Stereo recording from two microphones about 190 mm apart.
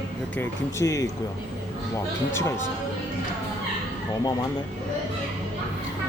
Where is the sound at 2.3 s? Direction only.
15° left (ahead or behind).